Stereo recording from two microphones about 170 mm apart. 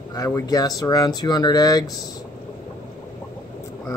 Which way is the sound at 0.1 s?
20° left (ahead or behind).